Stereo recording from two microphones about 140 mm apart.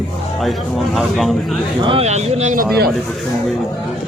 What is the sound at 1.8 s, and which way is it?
Speech, 45° right (ahead or behind).